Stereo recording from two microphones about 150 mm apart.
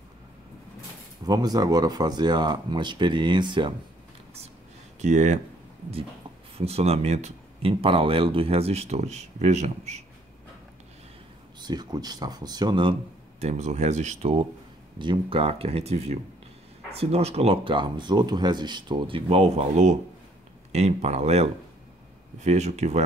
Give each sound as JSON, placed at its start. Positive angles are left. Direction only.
{"t": 1.2, "sound": "speech", "side_deg": -25}
{"t": 5.0, "sound": "speech", "side_deg": -50}
{"t": 6.6, "sound": "speech", "side_deg": -45}
{"t": 7.7, "sound": "speech", "side_deg": -35}
{"t": 11.6, "sound": "speech", "side_deg": -25}
{"t": 13.4, "sound": "speech", "side_deg": -45}